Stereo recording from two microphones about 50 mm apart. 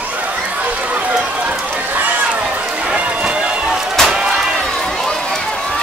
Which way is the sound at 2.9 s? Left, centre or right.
Right.